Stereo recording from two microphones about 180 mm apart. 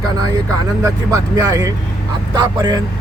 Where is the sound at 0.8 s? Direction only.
20° right (ahead or behind).